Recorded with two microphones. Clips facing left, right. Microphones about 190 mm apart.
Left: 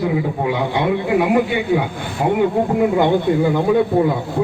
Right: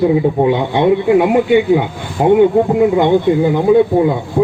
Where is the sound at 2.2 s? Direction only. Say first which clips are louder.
Right 7 dB; 25° right (ahead or behind).